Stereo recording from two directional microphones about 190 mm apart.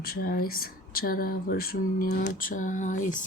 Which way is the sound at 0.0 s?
50° left (ahead or behind).